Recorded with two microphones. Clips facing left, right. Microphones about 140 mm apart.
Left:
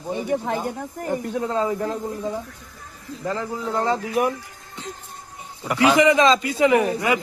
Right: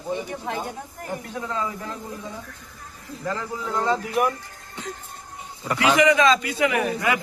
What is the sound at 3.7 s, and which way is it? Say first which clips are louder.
Speech: left 1 dB; 20° left (ahead or behind).